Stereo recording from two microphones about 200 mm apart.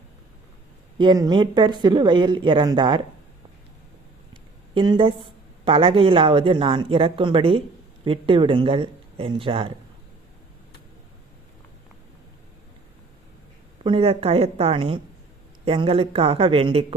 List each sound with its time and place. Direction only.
0.9 s speech: 20° right (ahead or behind)
4.7 s speech: 25° right (ahead or behind)
13.8 s speech: 25° right (ahead or behind)